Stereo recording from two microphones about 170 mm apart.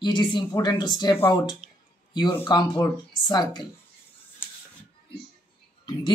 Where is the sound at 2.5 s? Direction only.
25° left (ahead or behind).